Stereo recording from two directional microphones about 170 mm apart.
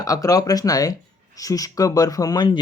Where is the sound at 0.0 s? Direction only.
20° left (ahead or behind).